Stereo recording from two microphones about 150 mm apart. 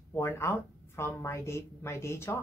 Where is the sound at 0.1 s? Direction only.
20° left (ahead or behind).